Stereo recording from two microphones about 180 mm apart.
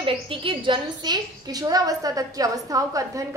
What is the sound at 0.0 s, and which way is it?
A woman's voice, 30° right (ahead or behind).